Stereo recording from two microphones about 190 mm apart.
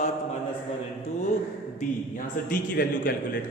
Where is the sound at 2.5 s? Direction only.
45° left (ahead or behind).